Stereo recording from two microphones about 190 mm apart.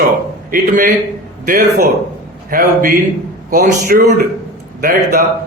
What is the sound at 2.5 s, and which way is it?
A man's voice, 50° right (ahead or behind).